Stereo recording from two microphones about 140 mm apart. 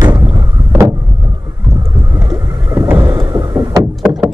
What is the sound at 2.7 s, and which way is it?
Vehicle, 20° right (ahead or behind).